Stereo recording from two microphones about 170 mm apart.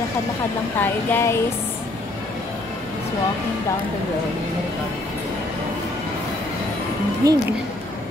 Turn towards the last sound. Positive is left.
turn(degrees=-20)  # may be behind; listen again after turning